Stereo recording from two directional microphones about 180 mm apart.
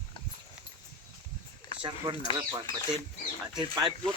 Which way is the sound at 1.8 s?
25° right (ahead or behind).